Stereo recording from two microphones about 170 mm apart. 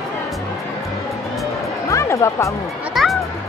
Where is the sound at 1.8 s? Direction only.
15° left (ahead or behind).